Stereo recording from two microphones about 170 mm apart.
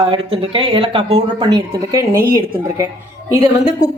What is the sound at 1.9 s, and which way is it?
Speech, 20° right (ahead or behind).